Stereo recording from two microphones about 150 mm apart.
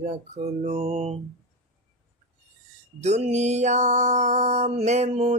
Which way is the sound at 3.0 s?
45° right (ahead or behind).